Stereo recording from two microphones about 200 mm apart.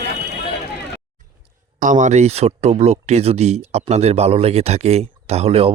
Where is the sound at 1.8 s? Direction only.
40° right (ahead or behind).